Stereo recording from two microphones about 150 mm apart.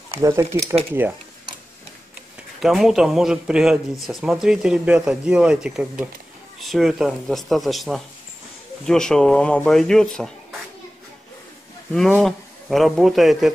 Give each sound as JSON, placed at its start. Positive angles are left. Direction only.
{"t": 0.2, "sound": "speech", "side_deg": -20}
{"t": 2.6, "sound": "speech", "side_deg": -5}
{"t": 11.9, "sound": "speech", "side_deg": 5}